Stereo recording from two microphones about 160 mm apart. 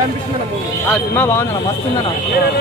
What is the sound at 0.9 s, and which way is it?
Speech, 15° left (ahead or behind).